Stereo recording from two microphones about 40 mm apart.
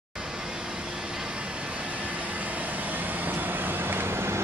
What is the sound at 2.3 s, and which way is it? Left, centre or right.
Vehicle, right.